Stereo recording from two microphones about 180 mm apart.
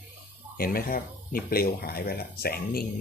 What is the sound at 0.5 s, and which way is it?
Speech, 55° left (ahead or behind).